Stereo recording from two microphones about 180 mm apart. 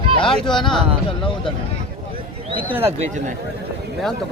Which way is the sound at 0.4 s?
25° left (ahead or behind).